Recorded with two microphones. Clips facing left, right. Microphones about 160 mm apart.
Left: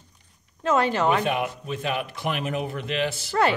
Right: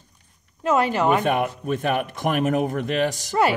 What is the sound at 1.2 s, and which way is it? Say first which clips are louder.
A man's voice: right 4 dB; 50° right (ahead or behind).